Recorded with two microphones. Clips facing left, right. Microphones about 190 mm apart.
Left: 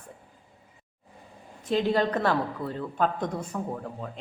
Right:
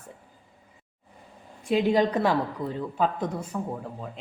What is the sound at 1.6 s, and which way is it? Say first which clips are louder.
A man's voice: right 2 dB; 10° right (ahead or behind).